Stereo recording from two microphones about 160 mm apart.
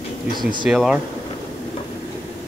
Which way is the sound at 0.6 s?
5° right (ahead or behind).